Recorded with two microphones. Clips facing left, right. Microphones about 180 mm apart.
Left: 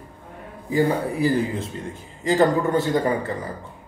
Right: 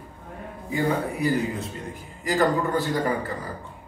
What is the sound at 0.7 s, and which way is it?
Speech, 30° left (ahead or behind).